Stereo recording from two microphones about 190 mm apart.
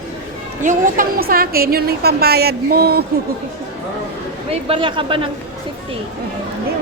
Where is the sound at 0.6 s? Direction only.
45° right (ahead or behind).